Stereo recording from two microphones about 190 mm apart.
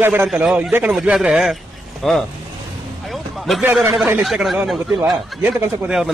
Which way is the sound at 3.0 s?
Centre (ahead or behind).